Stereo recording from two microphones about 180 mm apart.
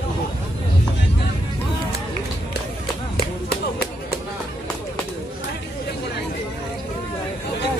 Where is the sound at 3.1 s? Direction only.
60° left (ahead or behind).